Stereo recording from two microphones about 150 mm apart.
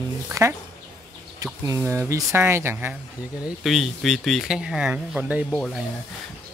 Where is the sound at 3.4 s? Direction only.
Centre (ahead or behind).